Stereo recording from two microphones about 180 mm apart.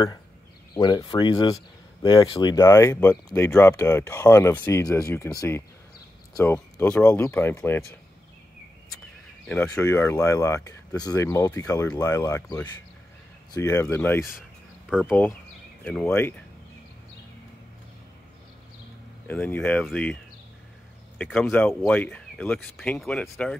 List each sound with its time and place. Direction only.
0.7 s speech: 25° left (ahead or behind)
2.5 s speech: 15° left (ahead or behind)
6.3 s speech: 15° left (ahead or behind)
9.8 s speech: 15° left (ahead or behind)
19.2 s speech: 10° left (ahead or behind)
21.2 s speech: 10° left (ahead or behind)